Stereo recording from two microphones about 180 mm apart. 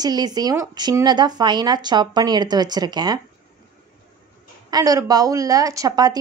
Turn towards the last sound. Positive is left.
turn(degrees=-20)  # may be behind; listen again after turning